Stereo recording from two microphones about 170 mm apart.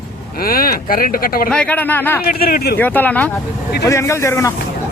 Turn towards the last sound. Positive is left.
turn(degrees=15)  # may be behind; listen again after turning